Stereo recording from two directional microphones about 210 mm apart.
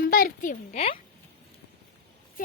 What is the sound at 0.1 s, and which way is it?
Speech, 40° left (ahead or behind).